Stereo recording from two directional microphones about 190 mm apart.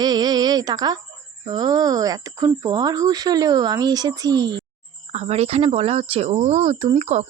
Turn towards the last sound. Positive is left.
turn(degrees=-35)  # may be behind; listen again after turning